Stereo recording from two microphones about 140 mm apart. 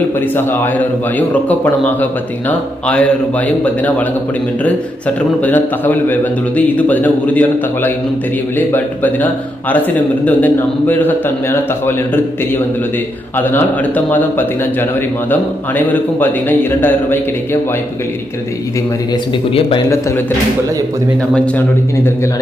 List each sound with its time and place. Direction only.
0.4 s a man's voice: 15° left (ahead or behind)
21.5 s a man's voice: 15° left (ahead or behind)